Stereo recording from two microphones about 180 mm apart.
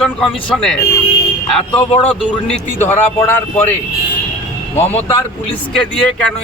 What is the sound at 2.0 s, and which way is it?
Speech, 5° left (ahead or behind).